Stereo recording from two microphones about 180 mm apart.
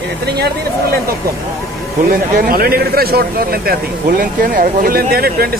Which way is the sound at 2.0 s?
55° right (ahead or behind).